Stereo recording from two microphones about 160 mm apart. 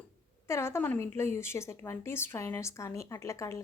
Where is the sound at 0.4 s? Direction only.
15° left (ahead or behind).